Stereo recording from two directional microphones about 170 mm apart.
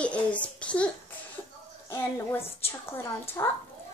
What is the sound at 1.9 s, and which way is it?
A woman's voice, 15° left (ahead or behind).